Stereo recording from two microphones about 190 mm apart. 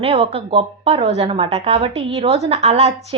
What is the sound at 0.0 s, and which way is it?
A woman's voice, 30° right (ahead or behind).